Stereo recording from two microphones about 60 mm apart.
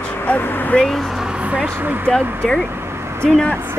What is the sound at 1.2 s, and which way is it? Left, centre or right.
Vehicle, centre.